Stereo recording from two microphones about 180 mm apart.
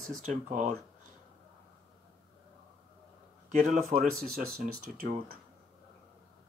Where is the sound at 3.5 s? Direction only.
45° right (ahead or behind).